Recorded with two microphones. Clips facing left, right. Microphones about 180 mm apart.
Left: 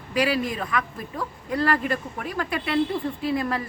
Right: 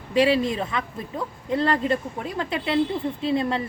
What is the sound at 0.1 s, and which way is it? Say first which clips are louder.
Speech: right 4 dB; 25° right (ahead or behind).